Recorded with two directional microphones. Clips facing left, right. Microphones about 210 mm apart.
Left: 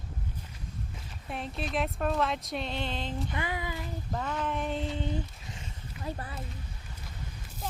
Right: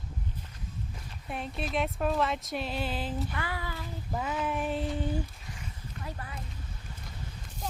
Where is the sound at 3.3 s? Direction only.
20° left (ahead or behind).